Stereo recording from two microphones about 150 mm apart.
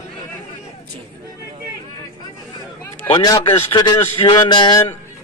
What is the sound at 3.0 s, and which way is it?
A man's voice, 35° left (ahead or behind).